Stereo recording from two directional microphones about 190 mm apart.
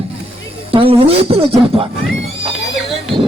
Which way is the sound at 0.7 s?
30° right (ahead or behind).